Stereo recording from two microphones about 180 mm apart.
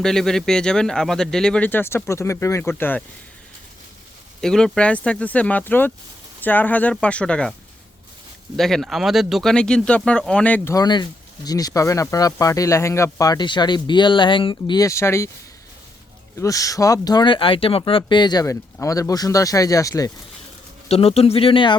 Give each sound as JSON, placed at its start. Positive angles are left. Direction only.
{"t": 0.0, "sound": "speech", "side_deg": 5}
{"t": 4.4, "sound": "speech", "side_deg": 5}
{"t": 8.5, "sound": "speech", "side_deg": 0}
{"t": 16.4, "sound": "speech", "side_deg": 20}
{"t": 20.8, "sound": "speech", "side_deg": 35}